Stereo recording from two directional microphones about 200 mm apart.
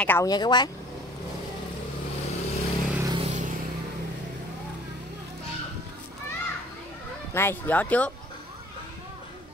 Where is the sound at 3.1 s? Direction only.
30° right (ahead or behind).